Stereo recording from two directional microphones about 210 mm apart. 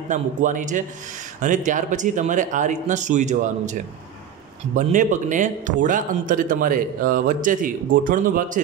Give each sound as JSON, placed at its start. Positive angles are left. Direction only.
{"t": 0.1, "sound": "a man's voice", "side_deg": -35}
{"t": 4.7, "sound": "a man's voice", "side_deg": -35}